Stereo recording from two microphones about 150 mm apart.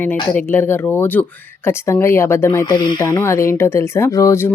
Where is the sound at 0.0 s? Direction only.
10° left (ahead or behind).